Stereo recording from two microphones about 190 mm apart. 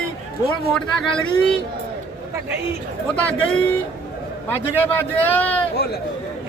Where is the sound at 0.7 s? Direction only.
5° left (ahead or behind).